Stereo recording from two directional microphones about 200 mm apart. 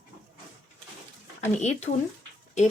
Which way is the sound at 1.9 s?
45° left (ahead or behind).